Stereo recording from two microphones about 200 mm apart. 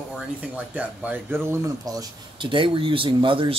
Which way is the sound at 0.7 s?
5° right (ahead or behind).